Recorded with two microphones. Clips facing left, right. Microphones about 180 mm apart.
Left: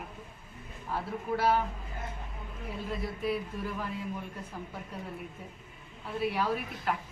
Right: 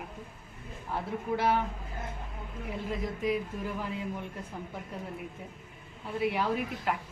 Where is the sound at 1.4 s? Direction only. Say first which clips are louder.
Left 1 dB; 20° right (ahead or behind).